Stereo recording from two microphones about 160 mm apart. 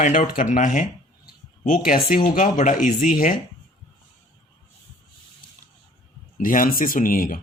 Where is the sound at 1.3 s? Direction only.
65° left (ahead or behind).